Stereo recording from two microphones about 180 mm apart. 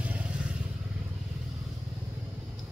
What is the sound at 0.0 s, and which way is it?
Vehicle, 5° right (ahead or behind).